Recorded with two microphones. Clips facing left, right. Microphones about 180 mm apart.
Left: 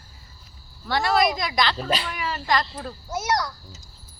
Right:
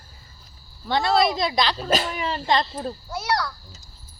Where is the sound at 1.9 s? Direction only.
45° right (ahead or behind).